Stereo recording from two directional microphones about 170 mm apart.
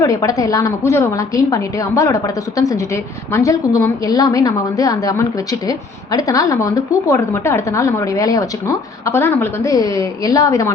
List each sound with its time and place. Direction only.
0.0 s a woman's voice: 20° left (ahead or behind)